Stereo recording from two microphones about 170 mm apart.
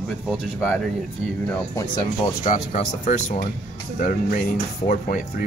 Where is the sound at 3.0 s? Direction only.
45° left (ahead or behind).